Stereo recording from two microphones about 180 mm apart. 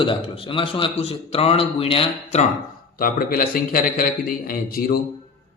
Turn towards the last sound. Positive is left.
turn(degrees=50)  # may be behind; listen again after turning